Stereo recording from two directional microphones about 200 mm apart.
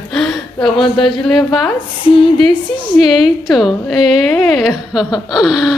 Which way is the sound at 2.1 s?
25° left (ahead or behind).